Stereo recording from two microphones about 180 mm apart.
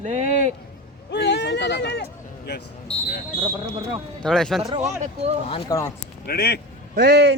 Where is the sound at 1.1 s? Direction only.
75° left (ahead or behind).